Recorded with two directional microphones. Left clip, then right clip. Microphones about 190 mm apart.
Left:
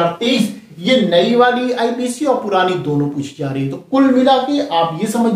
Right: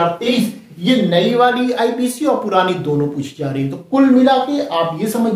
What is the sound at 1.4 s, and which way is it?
Speech, 25° right (ahead or behind).